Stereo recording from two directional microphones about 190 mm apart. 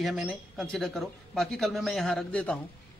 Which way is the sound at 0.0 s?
Centre (ahead or behind).